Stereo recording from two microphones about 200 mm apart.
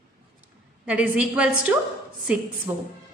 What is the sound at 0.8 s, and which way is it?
A woman's voice, 5° right (ahead or behind).